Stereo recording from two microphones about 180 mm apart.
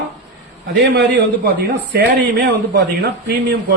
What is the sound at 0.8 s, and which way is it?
A man's voice, 65° right (ahead or behind).